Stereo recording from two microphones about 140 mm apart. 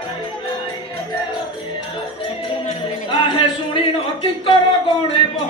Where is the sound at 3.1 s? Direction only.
40° left (ahead or behind).